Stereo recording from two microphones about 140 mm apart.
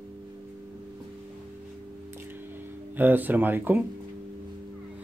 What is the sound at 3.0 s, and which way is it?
Speech, 15° right (ahead or behind).